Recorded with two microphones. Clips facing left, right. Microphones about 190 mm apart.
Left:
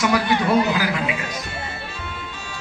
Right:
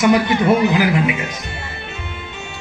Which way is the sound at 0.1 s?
20° right (ahead or behind).